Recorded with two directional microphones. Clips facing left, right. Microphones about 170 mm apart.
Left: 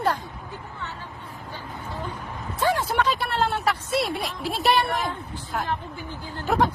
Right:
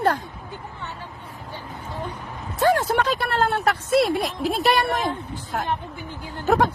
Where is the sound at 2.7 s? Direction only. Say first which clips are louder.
Right 2 dB; 45° right (ahead or behind).